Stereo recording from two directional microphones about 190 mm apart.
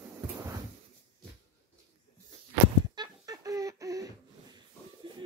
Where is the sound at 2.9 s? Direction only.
20° right (ahead or behind).